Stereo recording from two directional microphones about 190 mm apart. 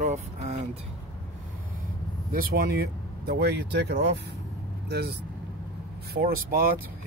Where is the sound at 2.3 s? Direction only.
50° right (ahead or behind).